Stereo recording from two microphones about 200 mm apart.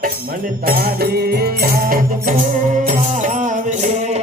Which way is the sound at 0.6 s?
45° right (ahead or behind).